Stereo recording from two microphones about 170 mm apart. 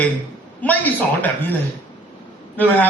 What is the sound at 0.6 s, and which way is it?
Speech, 10° left (ahead or behind).